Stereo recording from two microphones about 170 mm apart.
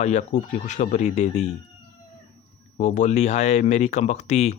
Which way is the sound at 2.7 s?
45° left (ahead or behind).